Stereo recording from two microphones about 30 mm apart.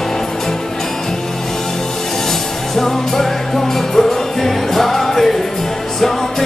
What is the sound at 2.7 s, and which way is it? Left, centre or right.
Music, centre.